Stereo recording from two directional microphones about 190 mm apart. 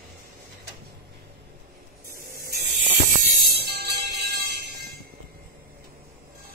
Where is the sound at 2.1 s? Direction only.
50° right (ahead or behind).